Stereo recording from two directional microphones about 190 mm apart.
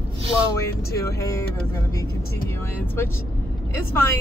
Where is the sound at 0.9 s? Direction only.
15° left (ahead or behind).